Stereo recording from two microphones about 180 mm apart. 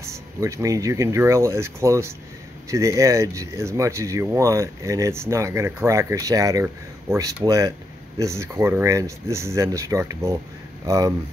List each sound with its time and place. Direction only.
0.0 s speech: 15° right (ahead or behind)